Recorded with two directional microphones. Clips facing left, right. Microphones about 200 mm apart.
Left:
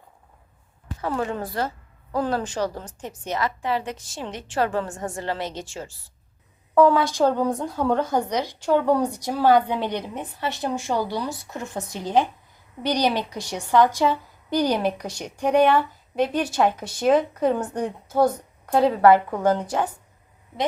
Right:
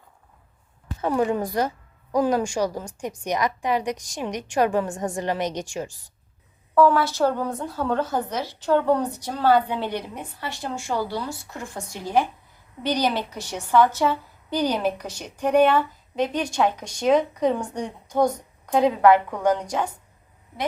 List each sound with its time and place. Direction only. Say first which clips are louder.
1.0 s a woman's voice: right 4 dB; 15° right (ahead or behind)
6.7 s a woman's voice: left 1 dB; 15° left (ahead or behind)
18.7 s a woman's voice: left 1 dB; 15° right (ahead or behind)
19.5 s a woman's voice: left 2 dB; 10° left (ahead or behind)